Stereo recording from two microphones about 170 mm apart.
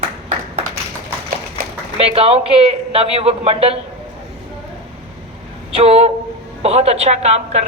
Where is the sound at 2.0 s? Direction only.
35° right (ahead or behind).